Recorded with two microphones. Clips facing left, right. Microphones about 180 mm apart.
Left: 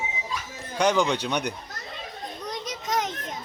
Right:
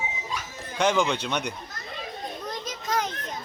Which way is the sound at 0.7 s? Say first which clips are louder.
Left 1 dB; centre (ahead or behind).